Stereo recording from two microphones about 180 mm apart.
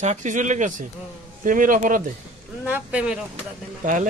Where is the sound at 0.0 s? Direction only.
40° right (ahead or behind).